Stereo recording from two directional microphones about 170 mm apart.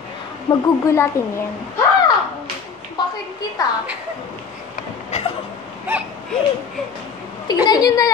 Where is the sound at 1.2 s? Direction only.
15° left (ahead or behind).